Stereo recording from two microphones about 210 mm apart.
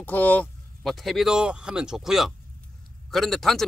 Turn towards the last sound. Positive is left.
turn(degrees=0)  # may be behind; listen again after turning